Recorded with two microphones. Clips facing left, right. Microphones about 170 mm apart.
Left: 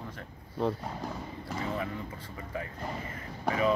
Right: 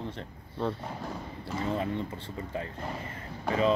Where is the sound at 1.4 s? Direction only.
25° right (ahead or behind).